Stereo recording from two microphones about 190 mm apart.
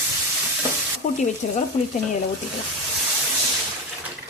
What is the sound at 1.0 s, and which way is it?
Frying, 45° left (ahead or behind).